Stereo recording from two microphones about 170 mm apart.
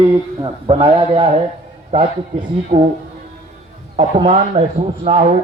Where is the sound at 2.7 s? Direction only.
50° right (ahead or behind).